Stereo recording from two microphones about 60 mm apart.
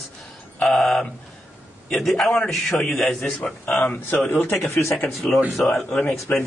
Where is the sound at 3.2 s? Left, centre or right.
Centre.